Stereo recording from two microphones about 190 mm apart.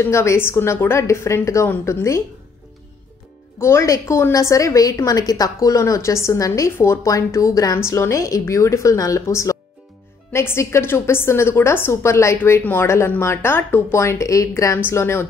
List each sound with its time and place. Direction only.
0.0 s a woman's voice: 15° left (ahead or behind)
3.5 s a woman's voice: 15° left (ahead or behind)